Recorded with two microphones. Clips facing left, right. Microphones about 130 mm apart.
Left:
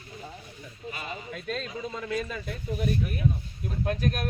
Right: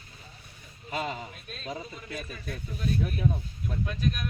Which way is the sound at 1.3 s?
90° left.